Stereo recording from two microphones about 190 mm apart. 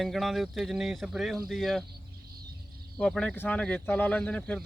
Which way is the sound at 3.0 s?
5° left (ahead or behind).